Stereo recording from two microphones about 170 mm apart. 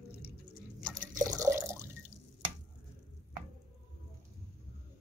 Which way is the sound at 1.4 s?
15° right (ahead or behind).